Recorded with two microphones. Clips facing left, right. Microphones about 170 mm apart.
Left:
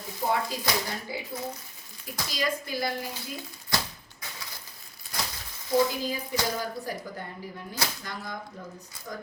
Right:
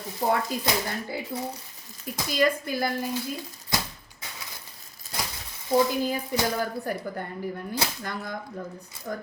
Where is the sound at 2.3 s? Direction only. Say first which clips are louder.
Right 7 dB; 50° right (ahead or behind).